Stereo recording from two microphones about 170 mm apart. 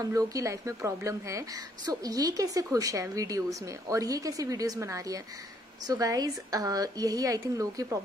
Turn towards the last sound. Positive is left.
turn(degrees=-20)  # may be behind; listen again after turning